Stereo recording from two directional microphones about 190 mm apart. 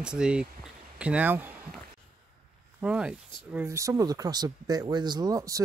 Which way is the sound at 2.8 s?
5° right (ahead or behind).